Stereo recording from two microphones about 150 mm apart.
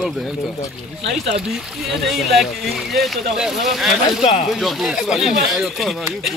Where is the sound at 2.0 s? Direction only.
Centre (ahead or behind).